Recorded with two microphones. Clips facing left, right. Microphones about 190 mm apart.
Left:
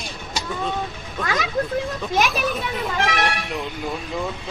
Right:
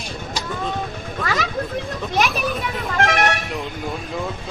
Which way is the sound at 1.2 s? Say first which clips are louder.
Left 1 dB; centre (ahead or behind).